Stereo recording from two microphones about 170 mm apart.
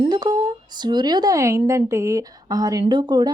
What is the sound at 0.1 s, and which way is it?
A woman's voice, 25° right (ahead or behind).